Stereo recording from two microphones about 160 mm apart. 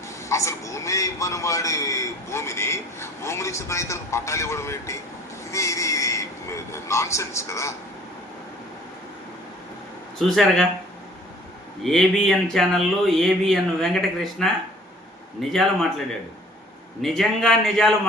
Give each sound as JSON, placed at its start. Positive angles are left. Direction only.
{"t": 0.3, "sound": "a man's voice", "side_deg": 20}
{"t": 5.5, "sound": "a sound", "side_deg": 20}
{"t": 10.2, "sound": "speech", "side_deg": 0}
{"t": 11.8, "sound": "speech", "side_deg": 0}
{"t": 17.0, "sound": "speech", "side_deg": 0}